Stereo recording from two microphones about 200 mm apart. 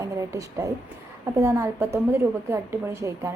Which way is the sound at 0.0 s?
15° right (ahead or behind).